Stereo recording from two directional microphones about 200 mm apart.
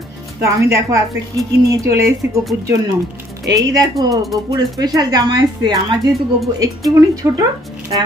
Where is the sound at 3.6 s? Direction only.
15° right (ahead or behind).